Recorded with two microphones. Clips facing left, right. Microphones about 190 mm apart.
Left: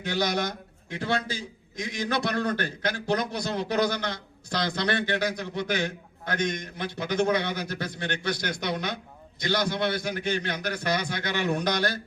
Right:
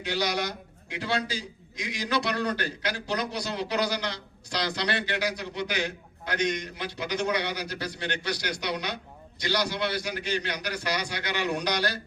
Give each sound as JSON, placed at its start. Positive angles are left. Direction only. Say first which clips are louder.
{"t": 0.0, "sound": "a man's voice", "louder": "left 2 dB", "side_deg": 50}